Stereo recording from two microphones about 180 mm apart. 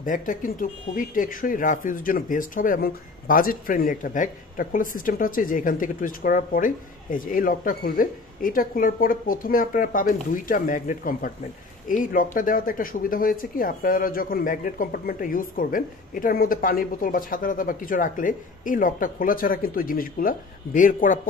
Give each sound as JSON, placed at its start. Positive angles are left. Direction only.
{"t": 0.0, "sound": "speech", "side_deg": 45}